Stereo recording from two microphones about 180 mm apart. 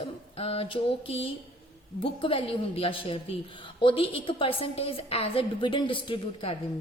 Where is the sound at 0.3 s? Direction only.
35° left (ahead or behind).